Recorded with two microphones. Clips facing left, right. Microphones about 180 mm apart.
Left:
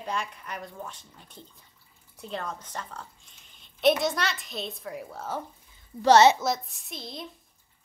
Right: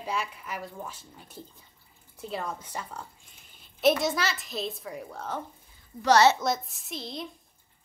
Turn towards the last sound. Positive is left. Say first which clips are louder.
# right 2 dB
turn(degrees=0)  # may be behind; listen again after turning